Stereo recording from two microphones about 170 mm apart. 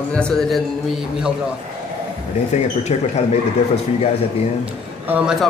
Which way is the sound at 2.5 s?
40° left (ahead or behind).